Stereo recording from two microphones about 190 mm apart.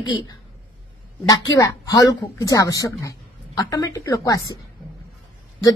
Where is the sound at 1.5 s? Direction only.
20° left (ahead or behind).